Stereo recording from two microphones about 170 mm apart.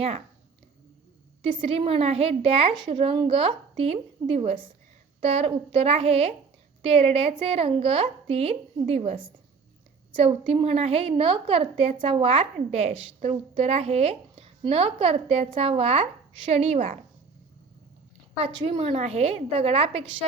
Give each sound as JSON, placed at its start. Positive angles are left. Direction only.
{"t": 1.4, "sound": "a woman's voice", "side_deg": -35}
{"t": 18.3, "sound": "a woman's voice", "side_deg": -35}